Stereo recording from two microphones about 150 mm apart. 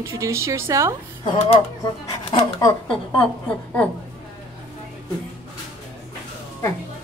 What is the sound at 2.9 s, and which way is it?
Speech, 10° left (ahead or behind).